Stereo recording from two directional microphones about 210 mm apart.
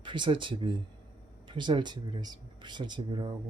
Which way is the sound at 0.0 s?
25° right (ahead or behind).